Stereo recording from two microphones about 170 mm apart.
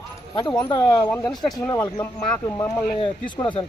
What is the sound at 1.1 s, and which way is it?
Speech, 5° left (ahead or behind).